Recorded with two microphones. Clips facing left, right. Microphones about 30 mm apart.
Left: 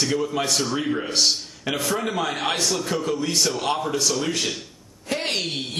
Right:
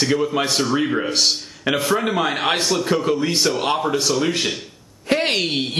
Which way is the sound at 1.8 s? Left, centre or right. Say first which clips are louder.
Right 4 dB; right.